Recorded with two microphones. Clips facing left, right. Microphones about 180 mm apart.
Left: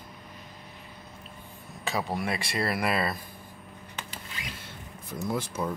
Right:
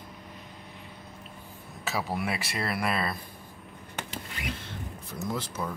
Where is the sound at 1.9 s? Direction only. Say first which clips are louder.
Left 1 dB; 5° right (ahead or behind).